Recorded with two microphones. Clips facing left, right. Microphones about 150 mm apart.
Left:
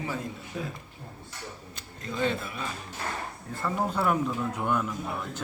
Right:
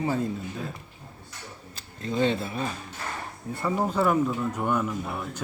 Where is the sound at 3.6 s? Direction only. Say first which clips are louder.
Right 3 dB; 5° right (ahead or behind).